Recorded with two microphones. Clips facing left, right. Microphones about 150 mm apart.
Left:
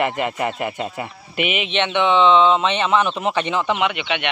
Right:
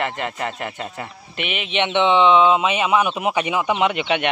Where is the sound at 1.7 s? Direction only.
20° right (ahead or behind).